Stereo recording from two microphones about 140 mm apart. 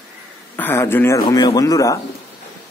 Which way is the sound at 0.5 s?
15° left (ahead or behind).